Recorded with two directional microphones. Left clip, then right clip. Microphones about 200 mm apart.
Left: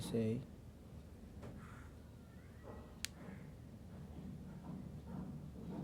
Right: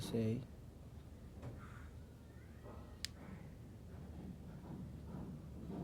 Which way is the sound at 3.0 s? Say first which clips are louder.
Left 1 dB; 15° left (ahead or behind).